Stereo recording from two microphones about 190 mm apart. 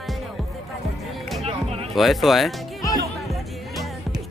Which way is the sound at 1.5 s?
30° right (ahead or behind).